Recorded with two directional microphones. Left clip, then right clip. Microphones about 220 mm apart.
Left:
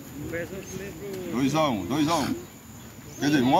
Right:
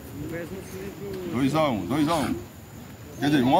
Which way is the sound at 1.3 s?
10° right (ahead or behind).